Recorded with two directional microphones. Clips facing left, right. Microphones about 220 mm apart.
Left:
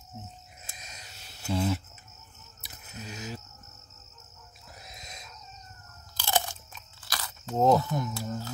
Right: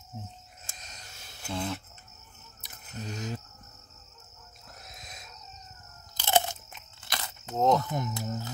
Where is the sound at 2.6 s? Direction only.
5° left (ahead or behind).